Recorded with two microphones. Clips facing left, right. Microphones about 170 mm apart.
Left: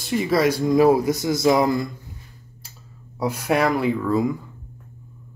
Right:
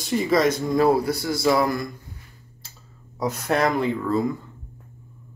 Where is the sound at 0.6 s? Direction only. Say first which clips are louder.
Left 3 dB; 15° left (ahead or behind).